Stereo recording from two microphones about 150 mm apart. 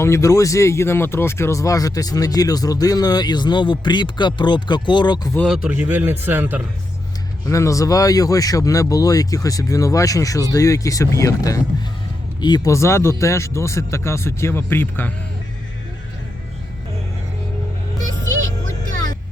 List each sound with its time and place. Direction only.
0.0 s speech: 20° left (ahead or behind)
5.6 s speech: 10° right (ahead or behind)
7.4 s speech: 20° left (ahead or behind)